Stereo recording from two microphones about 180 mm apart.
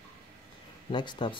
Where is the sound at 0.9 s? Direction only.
25° left (ahead or behind).